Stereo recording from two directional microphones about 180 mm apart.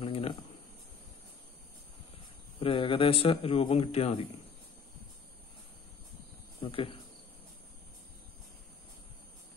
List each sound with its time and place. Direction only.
0.0 s a sound: 30° left (ahead or behind)
2.6 s speech: 30° left (ahead or behind)
6.6 s cricket: 30° left (ahead or behind)